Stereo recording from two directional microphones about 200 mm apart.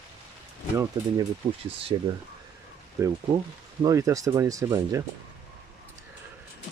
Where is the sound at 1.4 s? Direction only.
30° right (ahead or behind).